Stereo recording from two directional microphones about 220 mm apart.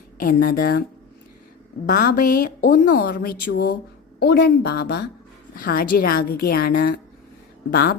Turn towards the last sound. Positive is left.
turn(degrees=45)  # may be behind; listen again after turning